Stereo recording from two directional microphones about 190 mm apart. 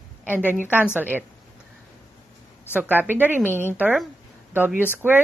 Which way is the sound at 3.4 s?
10° left (ahead or behind).